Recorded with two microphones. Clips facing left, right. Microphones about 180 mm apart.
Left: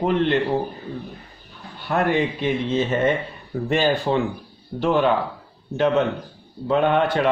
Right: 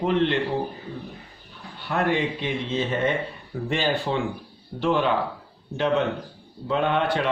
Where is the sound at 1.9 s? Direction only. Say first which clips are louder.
Left 3 dB; 45° left (ahead or behind).